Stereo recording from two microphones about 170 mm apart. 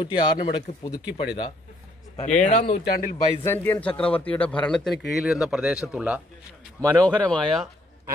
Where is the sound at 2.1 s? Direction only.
45° left (ahead or behind).